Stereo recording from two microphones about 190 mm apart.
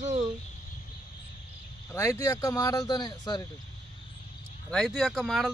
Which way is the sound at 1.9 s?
15° left (ahead or behind).